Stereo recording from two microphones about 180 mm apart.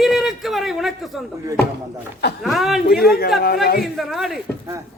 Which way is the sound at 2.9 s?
55° left (ahead or behind).